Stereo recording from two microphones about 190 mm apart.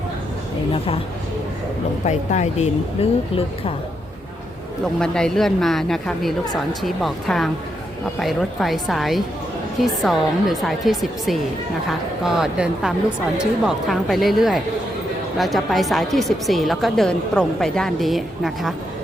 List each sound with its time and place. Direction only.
2.0 s speech: 35° left (ahead or behind)
4.9 s a woman's voice: 5° left (ahead or behind)